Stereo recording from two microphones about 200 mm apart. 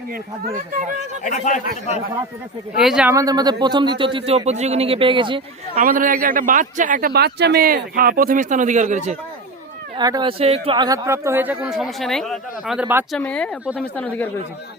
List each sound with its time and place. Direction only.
0.1 s speech: 45° right (ahead or behind)
1.2 s a man's voice: 40° left (ahead or behind)
2.7 s speech: 5° right (ahead or behind)
3.2 s a man's voice: 20° right (ahead or behind)
5.8 s a man's voice: 45° right (ahead or behind)
10.0 s speech: 20° right (ahead or behind)
13.1 s speech: 5° left (ahead or behind)